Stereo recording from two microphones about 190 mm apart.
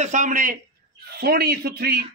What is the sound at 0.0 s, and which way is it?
A man's voice, 40° right (ahead or behind).